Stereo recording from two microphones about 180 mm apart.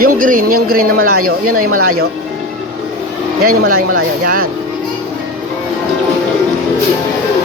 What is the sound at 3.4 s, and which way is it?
Speech, 55° right (ahead or behind).